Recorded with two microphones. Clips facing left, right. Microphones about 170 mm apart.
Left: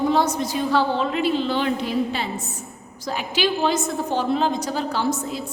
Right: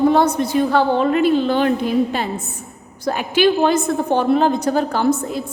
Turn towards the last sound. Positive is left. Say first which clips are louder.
# right 6 dB
turn(degrees=-50)  # may be behind; listen again after turning